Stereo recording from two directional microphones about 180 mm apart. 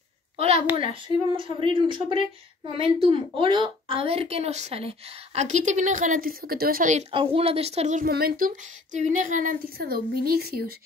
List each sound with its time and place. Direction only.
0.4 s a woman's voice: 35° right (ahead or behind)
8.1 s a woman's voice: 60° right (ahead or behind)